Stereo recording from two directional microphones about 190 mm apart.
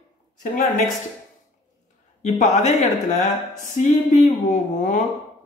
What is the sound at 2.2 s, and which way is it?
A woman's voice, 40° left (ahead or behind).